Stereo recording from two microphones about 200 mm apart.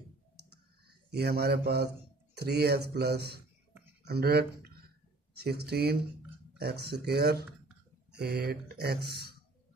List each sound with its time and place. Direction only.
1.1 s speech: 55° right (ahead or behind)